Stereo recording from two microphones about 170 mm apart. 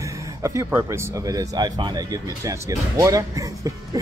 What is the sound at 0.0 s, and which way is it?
Speech, 20° right (ahead or behind).